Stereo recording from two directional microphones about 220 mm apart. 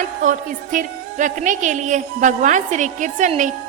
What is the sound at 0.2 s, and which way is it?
A woman's voice, 35° right (ahead or behind).